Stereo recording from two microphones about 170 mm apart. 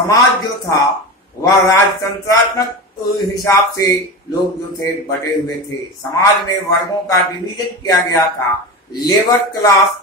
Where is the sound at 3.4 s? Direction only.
20° left (ahead or behind).